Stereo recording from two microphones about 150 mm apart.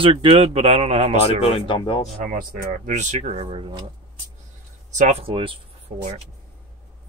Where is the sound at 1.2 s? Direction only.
40° left (ahead or behind).